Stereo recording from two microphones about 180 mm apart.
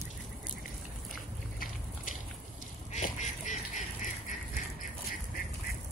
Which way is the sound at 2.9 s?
40° left (ahead or behind).